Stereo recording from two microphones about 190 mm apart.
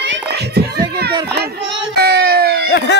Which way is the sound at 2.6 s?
65° left (ahead or behind).